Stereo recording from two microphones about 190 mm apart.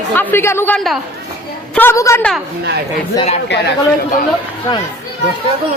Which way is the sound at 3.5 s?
70° left (ahead or behind).